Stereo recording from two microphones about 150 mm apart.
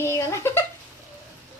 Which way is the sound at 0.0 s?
20° left (ahead or behind).